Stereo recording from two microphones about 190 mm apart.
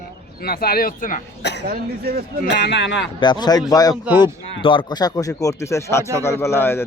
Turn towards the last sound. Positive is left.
turn(degrees=10)  # may be behind; listen again after turning